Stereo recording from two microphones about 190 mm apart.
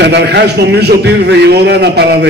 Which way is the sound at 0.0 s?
60° right (ahead or behind).